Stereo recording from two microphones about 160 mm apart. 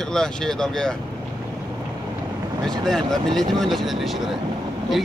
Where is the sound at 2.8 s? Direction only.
Centre (ahead or behind).